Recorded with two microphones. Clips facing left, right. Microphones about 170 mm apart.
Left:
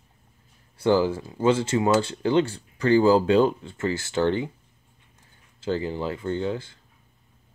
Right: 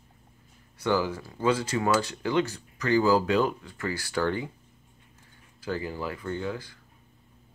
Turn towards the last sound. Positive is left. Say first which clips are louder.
# left 5 dB
turn(degrees=25)  # may be behind; listen again after turning